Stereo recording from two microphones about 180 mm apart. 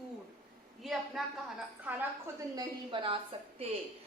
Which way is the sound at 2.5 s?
25° right (ahead or behind).